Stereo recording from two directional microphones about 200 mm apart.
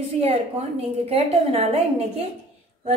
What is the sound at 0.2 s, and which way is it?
A woman's voice, 30° right (ahead or behind).